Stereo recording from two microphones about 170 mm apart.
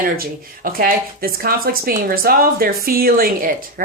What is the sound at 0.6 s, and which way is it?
A woman's voice, 60° right (ahead or behind).